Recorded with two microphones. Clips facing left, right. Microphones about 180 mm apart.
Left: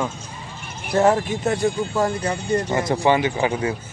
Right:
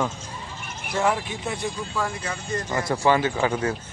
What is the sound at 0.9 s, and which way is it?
Speech, 40° left (ahead or behind).